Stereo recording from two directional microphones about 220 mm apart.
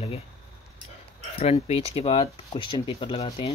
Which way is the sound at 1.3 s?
25° left (ahead or behind).